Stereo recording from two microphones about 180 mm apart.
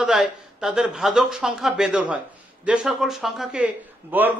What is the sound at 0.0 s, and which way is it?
Speech, 5° right (ahead or behind).